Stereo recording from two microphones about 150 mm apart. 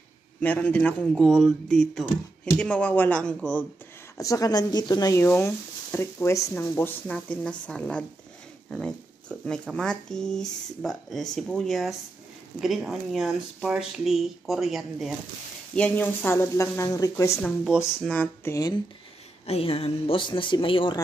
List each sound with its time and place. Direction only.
0.4 s speech: 10° left (ahead or behind)
4.2 s speech: 25° left (ahead or behind)
18.0 s speech: 10° left (ahead or behind)
19.4 s speech: 40° left (ahead or behind)